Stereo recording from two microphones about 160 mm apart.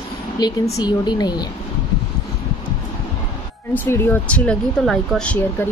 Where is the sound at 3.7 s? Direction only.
10° left (ahead or behind).